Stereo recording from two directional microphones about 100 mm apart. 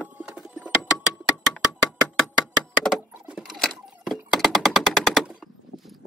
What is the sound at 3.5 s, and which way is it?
Typewriter, centre (ahead or behind).